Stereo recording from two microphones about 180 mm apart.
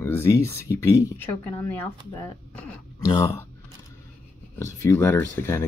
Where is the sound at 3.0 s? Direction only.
20° left (ahead or behind).